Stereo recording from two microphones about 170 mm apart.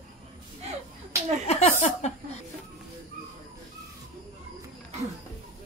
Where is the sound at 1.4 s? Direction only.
40° left (ahead or behind).